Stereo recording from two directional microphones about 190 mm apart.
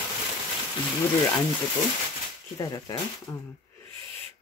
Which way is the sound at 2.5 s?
20° left (ahead or behind).